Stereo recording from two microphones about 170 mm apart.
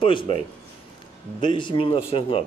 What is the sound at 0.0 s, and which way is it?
Speech, 30° left (ahead or behind).